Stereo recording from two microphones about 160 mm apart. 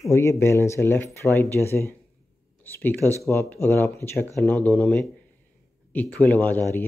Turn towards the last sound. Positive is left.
turn(degrees=15)  # may be behind; listen again after turning